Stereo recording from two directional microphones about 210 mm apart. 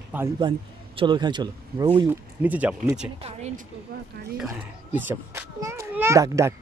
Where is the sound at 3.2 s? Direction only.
30° right (ahead or behind).